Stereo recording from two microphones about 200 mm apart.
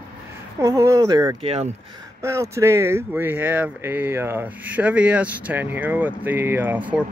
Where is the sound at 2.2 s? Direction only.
15° right (ahead or behind).